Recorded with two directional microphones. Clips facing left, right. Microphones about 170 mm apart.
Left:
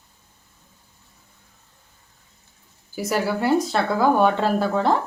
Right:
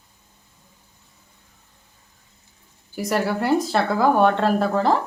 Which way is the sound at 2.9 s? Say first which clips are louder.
Right 1 dB; centre (ahead or behind).